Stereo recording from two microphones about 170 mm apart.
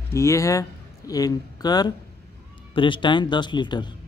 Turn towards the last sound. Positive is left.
turn(degrees=25)  # may be behind; listen again after turning